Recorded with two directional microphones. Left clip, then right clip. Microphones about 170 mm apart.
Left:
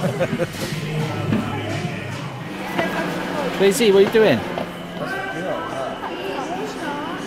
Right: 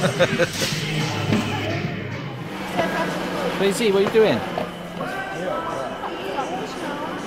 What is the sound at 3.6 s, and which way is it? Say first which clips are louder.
Speech: left 6 dB; 25° left (ahead or behind).